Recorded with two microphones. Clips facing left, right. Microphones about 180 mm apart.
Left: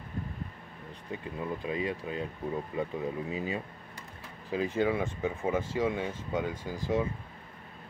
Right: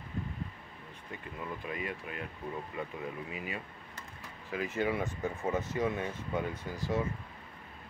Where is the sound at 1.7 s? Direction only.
30° left (ahead or behind).